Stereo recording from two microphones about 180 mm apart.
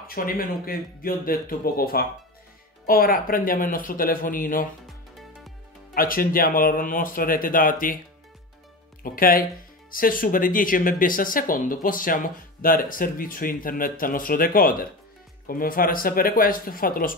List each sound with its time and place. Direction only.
0.0 s speech: 55° left (ahead or behind)
4.8 s music: centre (ahead or behind)
5.9 s speech: 50° left (ahead or behind)
9.0 s speech: 50° left (ahead or behind)